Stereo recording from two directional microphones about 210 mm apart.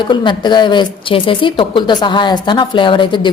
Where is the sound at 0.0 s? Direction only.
20° left (ahead or behind).